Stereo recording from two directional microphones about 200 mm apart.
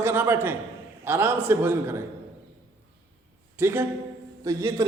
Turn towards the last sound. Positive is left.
turn(degrees=-20)  # may be behind; listen again after turning